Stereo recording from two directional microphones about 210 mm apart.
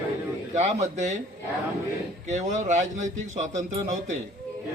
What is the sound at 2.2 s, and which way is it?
A man's voice, 35° right (ahead or behind).